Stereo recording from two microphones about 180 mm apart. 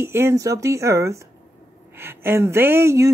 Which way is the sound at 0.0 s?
15° right (ahead or behind).